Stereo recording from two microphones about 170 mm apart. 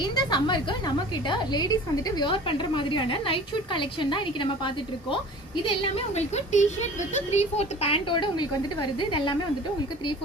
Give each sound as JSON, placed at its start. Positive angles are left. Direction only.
{"t": 0.0, "sound": "a woman's voice", "side_deg": 25}